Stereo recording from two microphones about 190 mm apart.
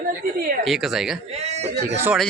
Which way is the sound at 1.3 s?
35° right (ahead or behind).